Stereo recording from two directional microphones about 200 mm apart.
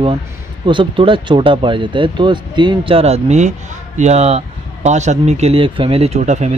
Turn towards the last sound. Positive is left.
turn(degrees=-35)  # may be behind; listen again after turning